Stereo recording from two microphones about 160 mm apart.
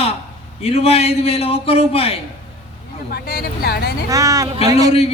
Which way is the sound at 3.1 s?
75° left (ahead or behind).